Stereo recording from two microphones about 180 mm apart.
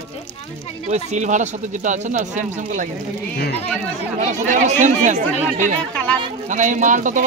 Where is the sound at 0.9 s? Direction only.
40° right (ahead or behind).